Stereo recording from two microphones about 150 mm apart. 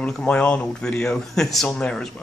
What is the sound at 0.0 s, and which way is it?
Speech, 5° left (ahead or behind).